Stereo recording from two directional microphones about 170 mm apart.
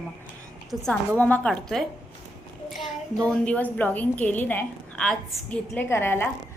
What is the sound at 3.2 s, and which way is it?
A woman's voice, 5° left (ahead or behind).